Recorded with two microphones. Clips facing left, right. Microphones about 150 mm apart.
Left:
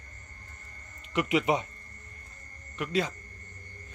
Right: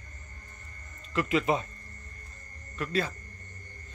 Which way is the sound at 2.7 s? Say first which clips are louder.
Left 1 dB; 15° left (ahead or behind).